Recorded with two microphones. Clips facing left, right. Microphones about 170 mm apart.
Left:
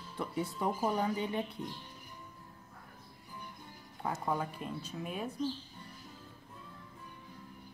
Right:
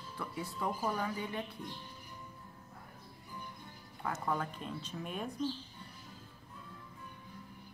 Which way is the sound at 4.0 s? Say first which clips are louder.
Left 1 dB; 15° left (ahead or behind).